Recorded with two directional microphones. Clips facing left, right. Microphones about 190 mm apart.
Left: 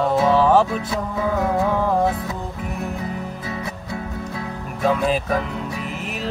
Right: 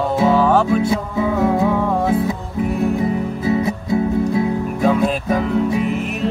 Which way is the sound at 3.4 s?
20° right (ahead or behind).